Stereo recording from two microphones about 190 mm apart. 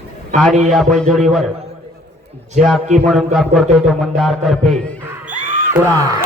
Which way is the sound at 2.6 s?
40° right (ahead or behind).